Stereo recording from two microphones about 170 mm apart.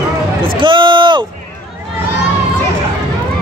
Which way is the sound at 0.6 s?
30° right (ahead or behind).